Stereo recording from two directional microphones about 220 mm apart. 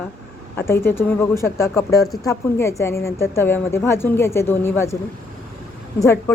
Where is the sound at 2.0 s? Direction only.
Centre (ahead or behind).